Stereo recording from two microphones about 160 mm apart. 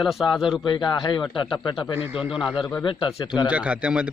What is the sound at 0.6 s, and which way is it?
A man's voice, 30° left (ahead or behind).